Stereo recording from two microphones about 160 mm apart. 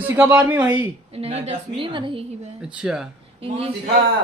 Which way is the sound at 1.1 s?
40° right (ahead or behind).